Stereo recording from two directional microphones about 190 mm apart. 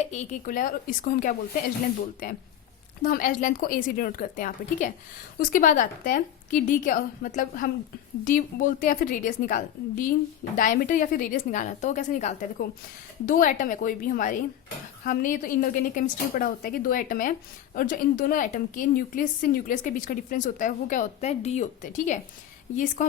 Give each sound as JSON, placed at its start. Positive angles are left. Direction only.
{"t": 0.0, "sound": "a woman's voice", "side_deg": 40}
{"t": 3.0, "sound": "a woman's voice", "side_deg": 45}